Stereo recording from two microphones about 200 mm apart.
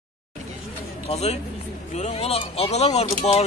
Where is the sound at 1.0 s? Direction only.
30° left (ahead or behind).